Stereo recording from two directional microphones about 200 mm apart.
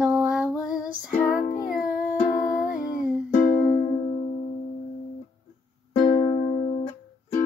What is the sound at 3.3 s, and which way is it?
Music, 40° left (ahead or behind).